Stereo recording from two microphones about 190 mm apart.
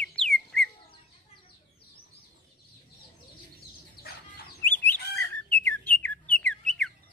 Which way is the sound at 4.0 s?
55° left (ahead or behind).